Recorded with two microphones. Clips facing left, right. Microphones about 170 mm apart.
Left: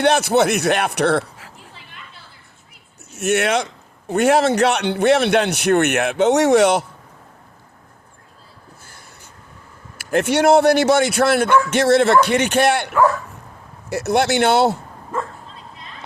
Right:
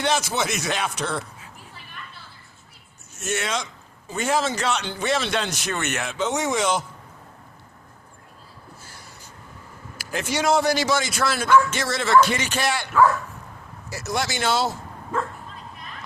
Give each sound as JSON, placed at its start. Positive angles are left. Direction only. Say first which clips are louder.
{"t": 0.0, "sound": "a man's voice", "louder": "left 9 dB", "side_deg": 65}
{"t": 3.2, "sound": "a man's voice", "louder": "left 9 dB", "side_deg": 65}
{"t": 10.0, "sound": "a man's voice", "louder": "left 9 dB", "side_deg": 60}
{"t": 13.9, "sound": "a man's voice", "louder": "left 10 dB", "side_deg": 60}